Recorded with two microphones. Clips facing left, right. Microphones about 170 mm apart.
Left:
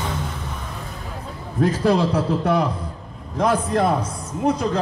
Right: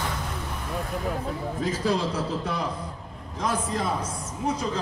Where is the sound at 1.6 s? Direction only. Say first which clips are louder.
Left 9 dB; 60° left (ahead or behind).